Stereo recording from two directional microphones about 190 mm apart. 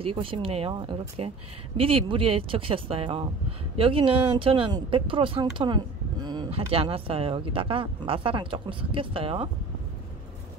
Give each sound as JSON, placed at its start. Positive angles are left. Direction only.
{"t": 0.0, "sound": "speech", "side_deg": -30}